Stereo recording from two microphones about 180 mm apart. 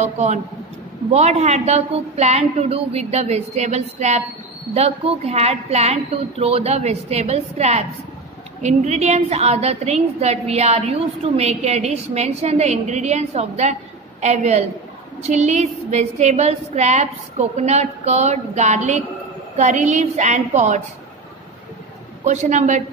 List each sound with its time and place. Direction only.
1.1 s a woman's voice: 40° right (ahead or behind)
22.2 s a woman's voice: 40° right (ahead or behind)